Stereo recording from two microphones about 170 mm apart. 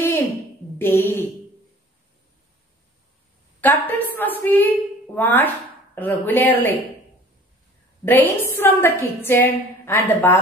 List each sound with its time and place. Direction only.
0.7 s a woman's voice: 10° left (ahead or behind)
3.6 s a woman's voice: 10° left (ahead or behind)
8.0 s a woman's voice: 10° left (ahead or behind)